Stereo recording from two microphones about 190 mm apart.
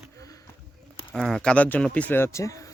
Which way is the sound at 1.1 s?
Centre (ahead or behind).